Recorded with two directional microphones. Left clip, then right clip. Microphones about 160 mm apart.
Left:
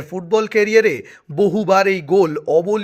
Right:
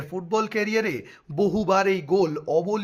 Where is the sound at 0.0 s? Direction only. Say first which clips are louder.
Left 7 dB; 20° left (ahead or behind).